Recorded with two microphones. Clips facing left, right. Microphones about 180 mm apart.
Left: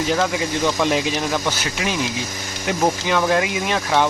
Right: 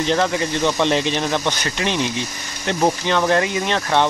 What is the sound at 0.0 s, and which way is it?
Speech, 5° left (ahead or behind).